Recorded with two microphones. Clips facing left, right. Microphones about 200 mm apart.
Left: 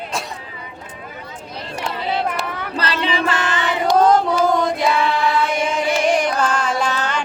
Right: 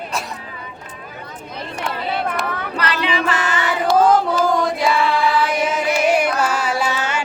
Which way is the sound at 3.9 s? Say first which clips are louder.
Even; 5° right (ahead or behind).